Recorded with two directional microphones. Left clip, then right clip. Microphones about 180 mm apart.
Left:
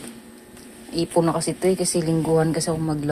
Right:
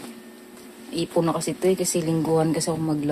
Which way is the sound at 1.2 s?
5° left (ahead or behind).